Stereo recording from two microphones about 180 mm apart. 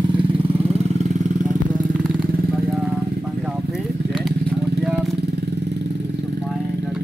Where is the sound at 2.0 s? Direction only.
Centre (ahead or behind).